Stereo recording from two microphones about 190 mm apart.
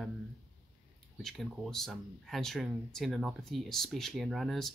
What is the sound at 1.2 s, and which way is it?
Speech, centre (ahead or behind).